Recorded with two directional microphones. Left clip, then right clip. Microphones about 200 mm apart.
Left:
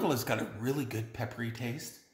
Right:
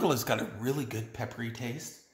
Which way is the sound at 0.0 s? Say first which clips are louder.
Right 3 dB; 20° right (ahead or behind).